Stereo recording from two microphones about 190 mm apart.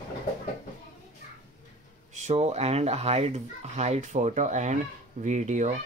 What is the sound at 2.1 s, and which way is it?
A child's voice, 35° right (ahead or behind).